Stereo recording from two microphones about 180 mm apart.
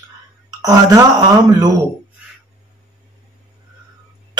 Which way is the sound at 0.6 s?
20° right (ahead or behind).